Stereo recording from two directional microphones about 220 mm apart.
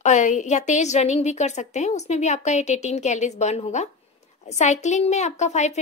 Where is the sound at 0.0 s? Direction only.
35° left (ahead or behind).